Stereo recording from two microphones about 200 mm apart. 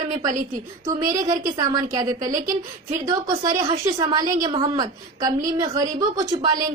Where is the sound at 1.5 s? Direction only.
20° right (ahead or behind).